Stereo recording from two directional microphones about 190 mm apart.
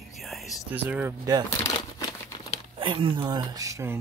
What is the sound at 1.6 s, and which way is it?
Crumpling, 20° left (ahead or behind).